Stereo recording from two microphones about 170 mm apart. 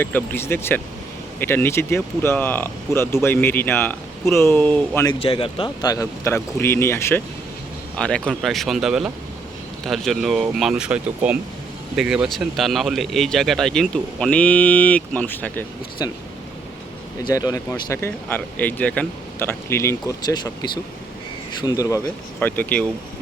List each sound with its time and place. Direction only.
0.0 s speech: 10° left (ahead or behind)
5.2 s speech: 30° left (ahead or behind); by 15.6 s 10° left (ahead or behind)
16.0 s speech: 20° left (ahead or behind)
17.2 s speech: 20° left (ahead or behind)
22.4 s speech: 10° left (ahead or behind)